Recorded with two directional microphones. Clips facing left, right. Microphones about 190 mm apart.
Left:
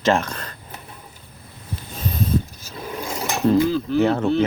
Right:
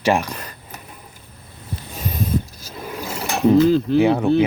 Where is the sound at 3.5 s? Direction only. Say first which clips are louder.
Right 6 dB; 15° right (ahead or behind).